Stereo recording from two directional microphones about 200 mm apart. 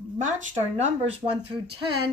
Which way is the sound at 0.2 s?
35° right (ahead or behind).